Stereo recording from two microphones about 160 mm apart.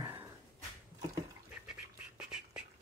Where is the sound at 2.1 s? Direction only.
5° right (ahead or behind).